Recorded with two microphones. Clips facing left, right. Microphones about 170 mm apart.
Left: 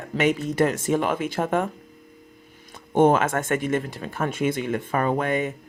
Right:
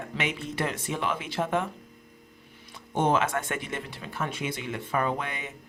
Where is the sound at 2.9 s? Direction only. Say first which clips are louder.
Left 7 dB; 50° left (ahead or behind).